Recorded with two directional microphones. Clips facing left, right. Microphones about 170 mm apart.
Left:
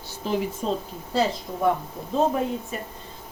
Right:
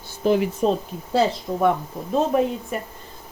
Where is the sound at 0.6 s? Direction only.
75° right (ahead or behind).